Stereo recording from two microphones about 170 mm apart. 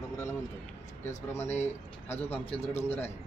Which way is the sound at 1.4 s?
40° left (ahead or behind).